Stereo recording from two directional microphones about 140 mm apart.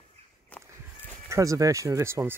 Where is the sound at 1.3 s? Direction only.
25° right (ahead or behind).